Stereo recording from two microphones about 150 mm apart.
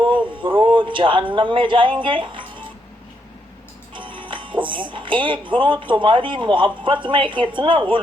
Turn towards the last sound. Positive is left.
turn(degrees=-35)  # may be behind; listen again after turning